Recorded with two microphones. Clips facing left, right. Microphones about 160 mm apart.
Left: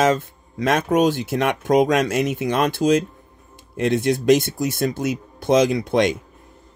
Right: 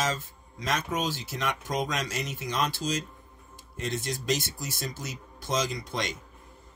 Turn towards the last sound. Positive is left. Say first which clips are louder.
# left 14 dB
turn(degrees=60)  # may be behind; listen again after turning